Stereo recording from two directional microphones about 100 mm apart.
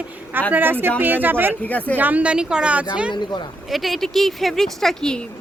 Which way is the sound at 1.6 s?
15° left (ahead or behind).